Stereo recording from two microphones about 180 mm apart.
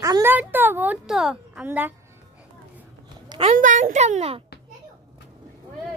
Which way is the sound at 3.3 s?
25° right (ahead or behind).